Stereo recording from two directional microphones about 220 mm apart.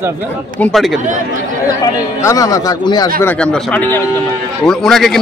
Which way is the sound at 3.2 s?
5° left (ahead or behind).